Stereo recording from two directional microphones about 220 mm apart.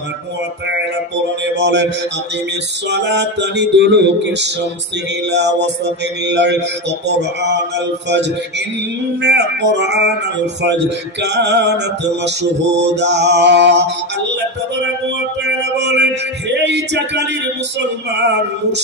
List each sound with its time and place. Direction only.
1.5 s music: 50° right (ahead or behind)
2.9 s music: 50° right (ahead or behind)
15.4 s music: 50° right (ahead or behind)